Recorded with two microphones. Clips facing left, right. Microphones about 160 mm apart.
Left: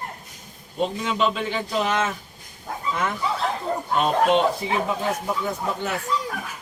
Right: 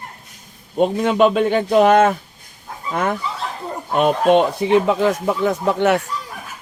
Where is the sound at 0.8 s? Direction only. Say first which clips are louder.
Right 8 dB; 55° right (ahead or behind).